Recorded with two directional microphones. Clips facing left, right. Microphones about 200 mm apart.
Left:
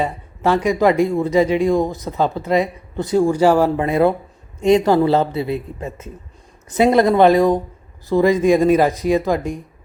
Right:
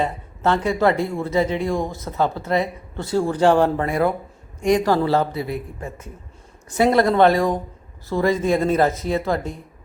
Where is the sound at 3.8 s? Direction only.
20° left (ahead or behind).